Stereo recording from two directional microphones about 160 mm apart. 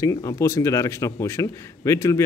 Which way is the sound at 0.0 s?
20° left (ahead or behind).